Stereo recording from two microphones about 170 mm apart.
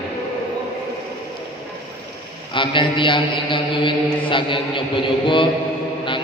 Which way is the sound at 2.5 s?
30° left (ahead or behind).